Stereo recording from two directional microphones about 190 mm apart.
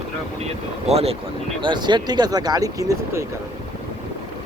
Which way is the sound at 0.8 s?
30° right (ahead or behind).